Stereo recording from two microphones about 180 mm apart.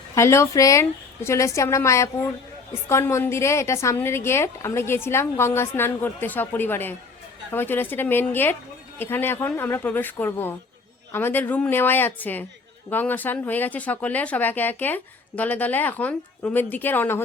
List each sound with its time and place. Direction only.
0.1 s speech: 15° left (ahead or behind)